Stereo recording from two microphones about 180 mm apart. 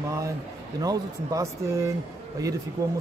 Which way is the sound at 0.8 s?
20° right (ahead or behind).